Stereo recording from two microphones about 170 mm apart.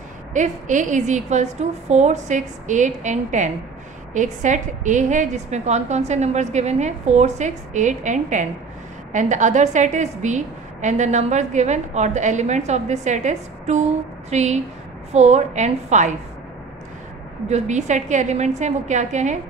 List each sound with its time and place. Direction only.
0.3 s a woman's voice: 45° right (ahead or behind)
17.5 s a woman's voice: 45° right (ahead or behind)